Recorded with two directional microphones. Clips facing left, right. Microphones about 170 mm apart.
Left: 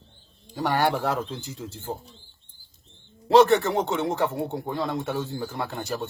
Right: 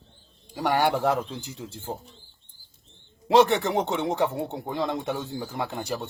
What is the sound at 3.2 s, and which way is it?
Speech, 10° right (ahead or behind).